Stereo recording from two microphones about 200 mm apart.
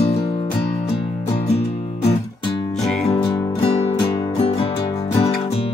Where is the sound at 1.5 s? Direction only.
30° left (ahead or behind).